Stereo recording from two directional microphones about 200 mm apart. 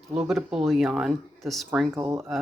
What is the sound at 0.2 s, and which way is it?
Speech, centre (ahead or behind).